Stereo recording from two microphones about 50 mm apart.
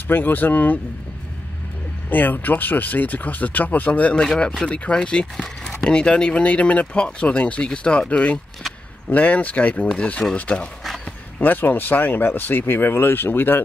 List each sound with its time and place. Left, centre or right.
0.1 s speech: left
2.0 s speech: left
4.1 s speech: centre
4.6 s speech: left
11.4 s speech: left